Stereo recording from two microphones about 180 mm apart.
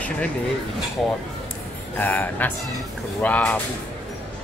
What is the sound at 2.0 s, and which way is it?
Speech, 10° left (ahead or behind).